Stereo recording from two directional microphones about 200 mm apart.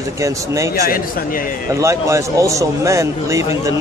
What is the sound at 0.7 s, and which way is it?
Speech, 50° left (ahead or behind).